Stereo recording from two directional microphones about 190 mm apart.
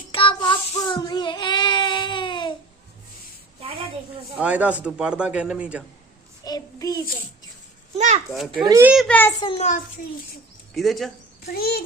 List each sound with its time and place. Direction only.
0.1 s child singing: 25° left (ahead or behind)
4.4 s a man's voice: 5° right (ahead or behind)
6.4 s child singing: 20° left (ahead or behind)
7.9 s a child's voice: 35° right (ahead or behind)
8.3 s speech: centre (ahead or behind)
8.6 s a man's voice: 20° right (ahead or behind)
8.9 s a child's voice: 5° left (ahead or behind)
9.4 s a child's voice: 30° left (ahead or behind)
10.8 s speech: centre (ahead or behind)
11.5 s a child's voice: 55° left (ahead or behind)